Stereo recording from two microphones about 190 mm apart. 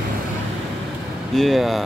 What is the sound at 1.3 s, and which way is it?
Speech, centre (ahead or behind).